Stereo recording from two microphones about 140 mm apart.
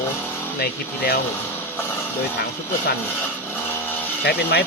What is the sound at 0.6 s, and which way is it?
Speech, 90° left.